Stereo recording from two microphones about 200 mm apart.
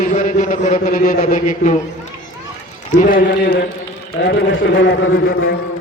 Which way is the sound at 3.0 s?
45° left (ahead or behind).